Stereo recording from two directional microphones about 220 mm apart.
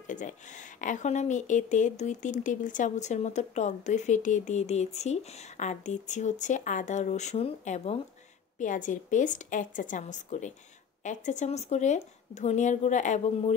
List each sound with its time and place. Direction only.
0.0 s speech: 35° left (ahead or behind)